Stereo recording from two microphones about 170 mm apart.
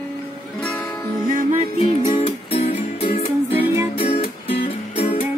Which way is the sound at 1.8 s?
35° left (ahead or behind).